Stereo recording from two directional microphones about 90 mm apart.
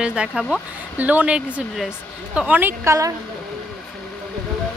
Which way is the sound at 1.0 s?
20° right (ahead or behind).